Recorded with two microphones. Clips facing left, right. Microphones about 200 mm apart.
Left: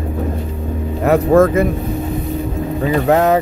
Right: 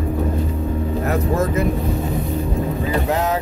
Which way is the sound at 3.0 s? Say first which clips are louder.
Left 11 dB; 65° left (ahead or behind).